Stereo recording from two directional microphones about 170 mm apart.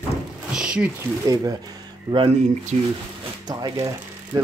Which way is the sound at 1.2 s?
20° right (ahead or behind).